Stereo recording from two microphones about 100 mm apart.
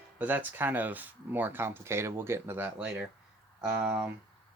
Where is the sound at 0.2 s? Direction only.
20° right (ahead or behind).